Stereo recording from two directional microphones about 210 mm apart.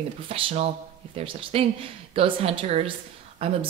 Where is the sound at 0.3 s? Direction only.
30° right (ahead or behind).